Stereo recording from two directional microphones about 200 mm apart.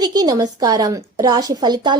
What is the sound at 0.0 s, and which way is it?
A woman's voice, 20° right (ahead or behind).